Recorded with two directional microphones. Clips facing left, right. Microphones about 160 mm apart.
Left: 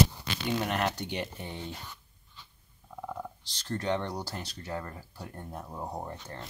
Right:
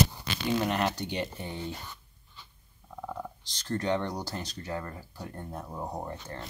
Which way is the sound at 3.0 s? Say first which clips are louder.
Right 1 dB; centre (ahead or behind).